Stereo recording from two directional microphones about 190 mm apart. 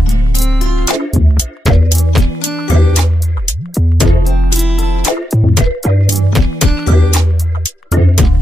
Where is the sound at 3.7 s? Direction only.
Centre (ahead or behind).